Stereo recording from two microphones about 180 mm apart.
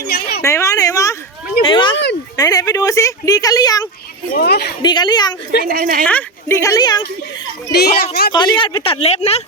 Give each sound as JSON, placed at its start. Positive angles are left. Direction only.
{"t": 0.1, "sound": "a sound", "side_deg": 60}
{"t": 0.4, "sound": "a sound", "side_deg": 15}
{"t": 2.3, "sound": "speech", "side_deg": 20}
{"t": 4.4, "sound": "a woman's voice", "side_deg": 65}
{"t": 4.8, "sound": "speech", "side_deg": 25}
{"t": 5.6, "sound": "speech", "side_deg": -55}
{"t": 6.1, "sound": "speech", "side_deg": 10}
{"t": 7.7, "sound": "a woman's voice", "side_deg": 60}
{"t": 8.3, "sound": "a woman's voice", "side_deg": 25}